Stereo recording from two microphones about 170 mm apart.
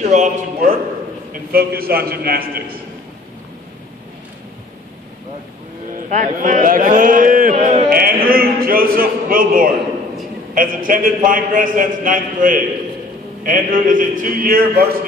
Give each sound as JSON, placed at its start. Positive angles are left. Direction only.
{"t": 0.0, "sound": "a man's voice", "side_deg": -45}
{"t": 1.3, "sound": "a man's voice", "side_deg": -65}
{"t": 6.0, "sound": "a man's voice", "side_deg": -50}
{"t": 7.9, "sound": "a sound", "side_deg": -60}
{"t": 10.5, "sound": "a man's voice", "side_deg": -55}